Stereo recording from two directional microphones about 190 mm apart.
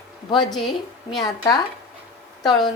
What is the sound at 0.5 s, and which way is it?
Speech, centre (ahead or behind).